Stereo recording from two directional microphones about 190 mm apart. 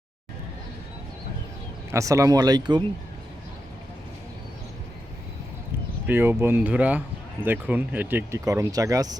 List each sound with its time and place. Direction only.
1.9 s speech: 15° right (ahead or behind)
6.1 s speech: 10° right (ahead or behind)